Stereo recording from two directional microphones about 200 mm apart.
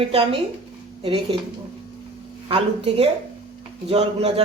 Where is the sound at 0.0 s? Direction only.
30° right (ahead or behind).